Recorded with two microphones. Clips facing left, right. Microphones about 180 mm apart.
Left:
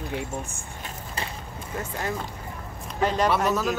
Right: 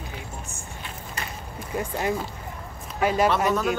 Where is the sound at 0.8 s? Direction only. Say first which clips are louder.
Left 2 dB; 30° left (ahead or behind).